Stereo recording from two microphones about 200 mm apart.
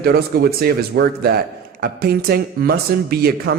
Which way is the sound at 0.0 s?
50° right (ahead or behind).